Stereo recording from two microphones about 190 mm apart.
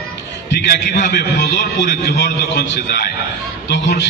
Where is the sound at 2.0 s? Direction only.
60° left (ahead or behind).